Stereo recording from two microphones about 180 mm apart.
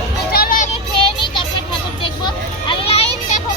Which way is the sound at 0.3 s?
50° left (ahead or behind).